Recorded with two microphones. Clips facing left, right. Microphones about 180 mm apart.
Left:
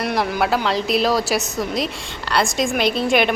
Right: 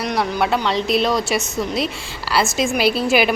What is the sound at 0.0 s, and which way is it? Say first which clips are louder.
A woman's voice: even; 5° left (ahead or behind).